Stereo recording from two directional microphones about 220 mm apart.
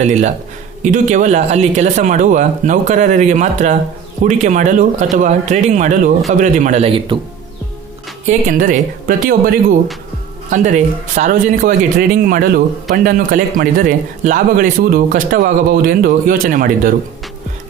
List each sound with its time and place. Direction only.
0.0 s speech: 30° right (ahead or behind)
8.3 s speech: 35° right (ahead or behind)